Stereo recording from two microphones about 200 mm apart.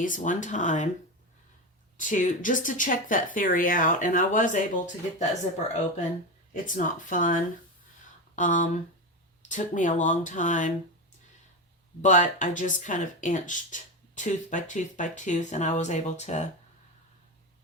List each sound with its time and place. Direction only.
0.0 s speech: 40° left (ahead or behind)
2.0 s speech: 40° left (ahead or behind)
12.0 s speech: 40° left (ahead or behind)